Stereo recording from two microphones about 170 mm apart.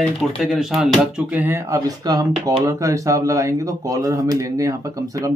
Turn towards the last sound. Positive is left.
turn(degrees=-20)  # may be behind; listen again after turning